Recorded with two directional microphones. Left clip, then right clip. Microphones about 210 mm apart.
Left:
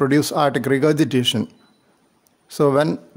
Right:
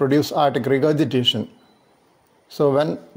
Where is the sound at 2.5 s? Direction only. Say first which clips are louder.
Left 1 dB; 20° left (ahead or behind).